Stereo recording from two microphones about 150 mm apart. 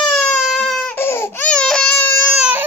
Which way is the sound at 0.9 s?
15° left (ahead or behind).